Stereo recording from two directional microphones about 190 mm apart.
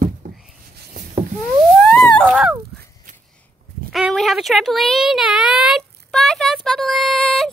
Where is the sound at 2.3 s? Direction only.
10° right (ahead or behind).